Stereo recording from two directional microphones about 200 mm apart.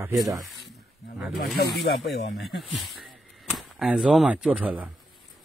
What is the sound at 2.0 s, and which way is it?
Speech, centre (ahead or behind).